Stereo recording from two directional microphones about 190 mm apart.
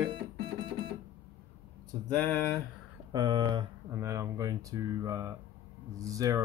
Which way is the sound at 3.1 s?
20° right (ahead or behind).